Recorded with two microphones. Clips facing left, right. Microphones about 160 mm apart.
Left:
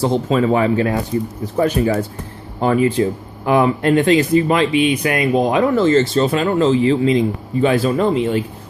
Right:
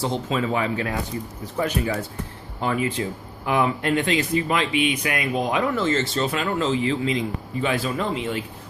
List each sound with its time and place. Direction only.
0.0 s speech: 45° left (ahead or behind)